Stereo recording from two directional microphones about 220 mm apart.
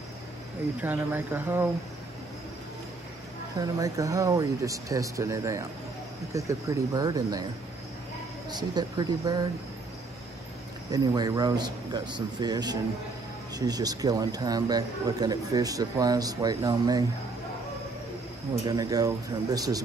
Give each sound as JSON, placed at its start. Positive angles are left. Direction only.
{"t": 0.7, "sound": "a man's voice", "side_deg": -10}
{"t": 3.5, "sound": "a man's voice", "side_deg": -15}
{"t": 8.5, "sound": "speech", "side_deg": -20}
{"t": 10.9, "sound": "a man's voice", "side_deg": -15}
{"t": 18.7, "sound": "a man's voice", "side_deg": -15}